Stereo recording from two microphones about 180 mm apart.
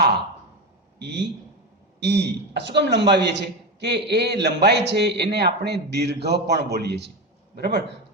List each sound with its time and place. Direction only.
0.9 s a man's voice: 70° right (ahead or behind)